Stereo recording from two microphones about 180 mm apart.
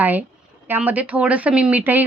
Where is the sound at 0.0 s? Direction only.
10° right (ahead or behind).